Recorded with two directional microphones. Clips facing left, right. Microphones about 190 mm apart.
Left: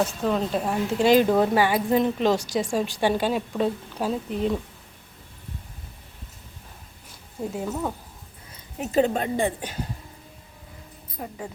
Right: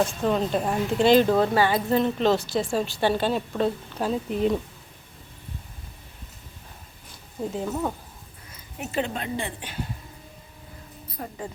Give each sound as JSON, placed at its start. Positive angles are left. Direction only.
{"t": 0.0, "sound": "speech", "side_deg": 0}
{"t": 7.5, "sound": "speech", "side_deg": 5}
{"t": 8.8, "sound": "a woman's voice", "side_deg": 40}
{"t": 11.2, "sound": "speech", "side_deg": 15}